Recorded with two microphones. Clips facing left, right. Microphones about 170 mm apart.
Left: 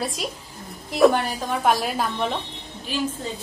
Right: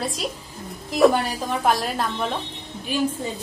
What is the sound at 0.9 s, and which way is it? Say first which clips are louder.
A woman's voice: even; centre (ahead or behind).